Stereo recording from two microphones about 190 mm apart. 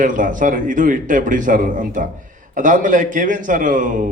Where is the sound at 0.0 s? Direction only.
45° right (ahead or behind).